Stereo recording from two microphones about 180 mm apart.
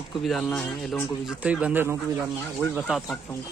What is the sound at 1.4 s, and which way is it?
A man's voice, 5° right (ahead or behind).